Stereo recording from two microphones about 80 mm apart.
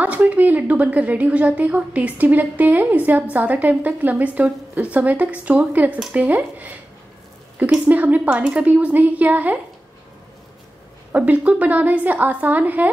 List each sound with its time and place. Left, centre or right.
0.0 s a woman's voice: centre
7.9 s a woman's voice: right
11.1 s a woman's voice: centre